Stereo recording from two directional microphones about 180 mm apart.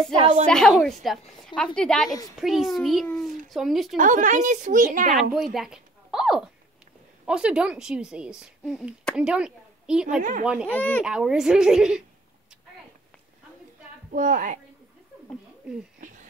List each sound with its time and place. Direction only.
0.1 s a woman's voice: 35° right (ahead or behind)
0.5 s speech: centre (ahead or behind)
3.9 s a woman's voice: 45° right (ahead or behind)
5.1 s a woman's voice: centre (ahead or behind)
10.7 s speech: 10° left (ahead or behind)
11.1 s speech: 5° right (ahead or behind)
14.1 s a woman's voice: 45° right (ahead or behind)
15.7 s speech: 5° right (ahead or behind)
16.0 s a sound: 45° right (ahead or behind)